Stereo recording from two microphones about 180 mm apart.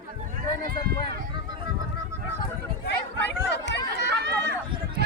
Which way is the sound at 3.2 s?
75° left (ahead or behind).